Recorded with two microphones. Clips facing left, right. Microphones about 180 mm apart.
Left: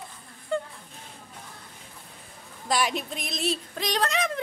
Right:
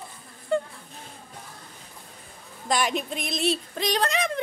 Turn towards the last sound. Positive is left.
turn(degrees=0)  # may be behind; listen again after turning